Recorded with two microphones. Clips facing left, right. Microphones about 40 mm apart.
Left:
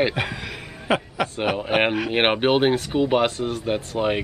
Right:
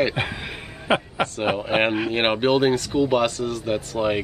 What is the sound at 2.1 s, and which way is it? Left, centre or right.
Speech, centre.